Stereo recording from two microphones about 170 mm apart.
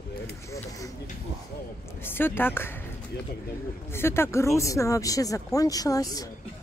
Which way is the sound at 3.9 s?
15° left (ahead or behind).